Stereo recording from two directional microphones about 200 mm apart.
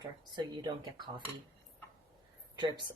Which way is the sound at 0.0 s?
20° right (ahead or behind).